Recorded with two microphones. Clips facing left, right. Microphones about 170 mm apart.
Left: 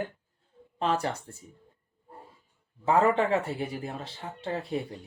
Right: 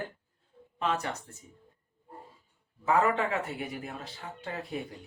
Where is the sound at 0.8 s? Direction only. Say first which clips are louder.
Left 3 dB; 35° left (ahead or behind).